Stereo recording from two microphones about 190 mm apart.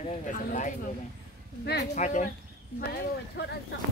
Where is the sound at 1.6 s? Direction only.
60° left (ahead or behind).